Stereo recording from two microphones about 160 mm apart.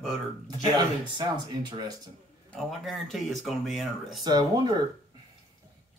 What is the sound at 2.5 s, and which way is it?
Speech, centre (ahead or behind).